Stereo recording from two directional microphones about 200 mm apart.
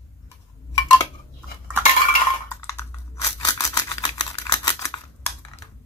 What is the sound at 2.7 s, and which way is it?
Computer keyboard, 15° left (ahead or behind).